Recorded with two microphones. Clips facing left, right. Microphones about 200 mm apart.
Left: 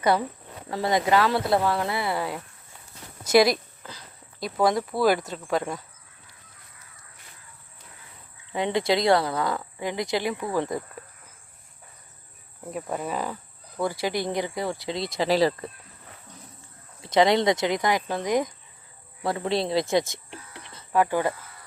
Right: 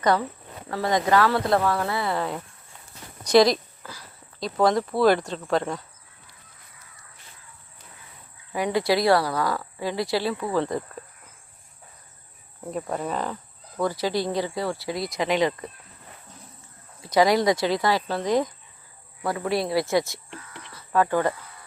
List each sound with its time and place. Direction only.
0.0 s speech: 10° left (ahead or behind)
3.8 s speech: 20° left (ahead or behind)
4.4 s speech: 10° left (ahead or behind)
8.5 s speech: 25° left (ahead or behind)
12.7 s speech: 5° left (ahead or behind); by 15.5 s 35° left (ahead or behind)
17.0 s speech: 25° left (ahead or behind)
19.2 s speech: 25° left (ahead or behind)